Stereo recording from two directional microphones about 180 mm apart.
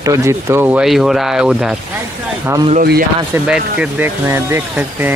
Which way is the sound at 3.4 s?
5° right (ahead or behind).